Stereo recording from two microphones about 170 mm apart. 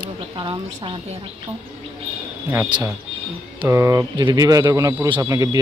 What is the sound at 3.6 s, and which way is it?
Speech, 20° right (ahead or behind).